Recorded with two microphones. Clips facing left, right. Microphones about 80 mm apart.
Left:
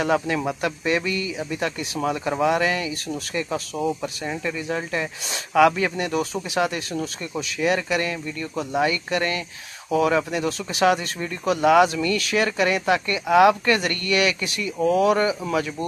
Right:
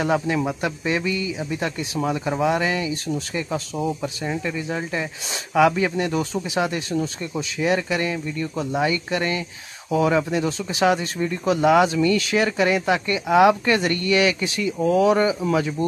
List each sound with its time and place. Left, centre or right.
0.0 s speech: centre
5.9 s speech: centre
6.9 s speech: centre
14.8 s speech: centre